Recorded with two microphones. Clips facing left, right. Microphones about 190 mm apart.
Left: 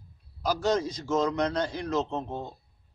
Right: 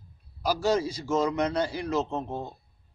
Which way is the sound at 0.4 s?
10° right (ahead or behind).